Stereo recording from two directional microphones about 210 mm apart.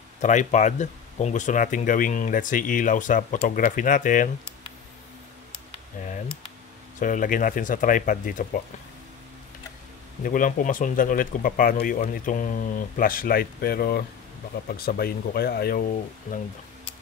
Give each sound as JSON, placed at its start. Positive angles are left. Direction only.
{"t": 0.2, "sound": "speech", "side_deg": 35}
{"t": 6.0, "sound": "computer keyboard", "side_deg": 35}
{"t": 7.0, "sound": "speech", "side_deg": 40}
{"t": 10.2, "sound": "speech", "side_deg": 40}